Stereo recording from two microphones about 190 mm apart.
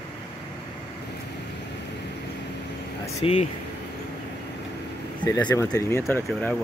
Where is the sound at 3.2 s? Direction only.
35° left (ahead or behind).